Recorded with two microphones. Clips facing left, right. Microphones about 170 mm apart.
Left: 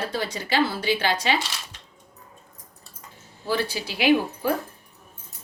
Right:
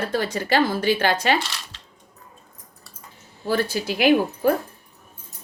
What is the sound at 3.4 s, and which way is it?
A woman's voice, 45° right (ahead or behind).